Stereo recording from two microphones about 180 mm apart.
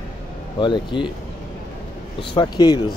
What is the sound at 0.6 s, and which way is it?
Speech, 25° left (ahead or behind).